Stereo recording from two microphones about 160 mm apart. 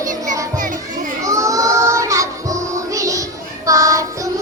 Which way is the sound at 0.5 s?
55° right (ahead or behind).